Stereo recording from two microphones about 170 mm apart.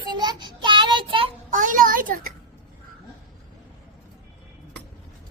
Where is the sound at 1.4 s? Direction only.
50° right (ahead or behind).